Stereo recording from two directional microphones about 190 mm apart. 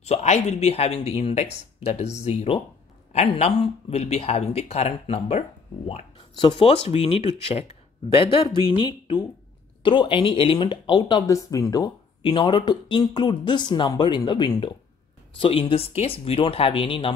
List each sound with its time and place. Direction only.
0.0 s speech: 35° left (ahead or behind)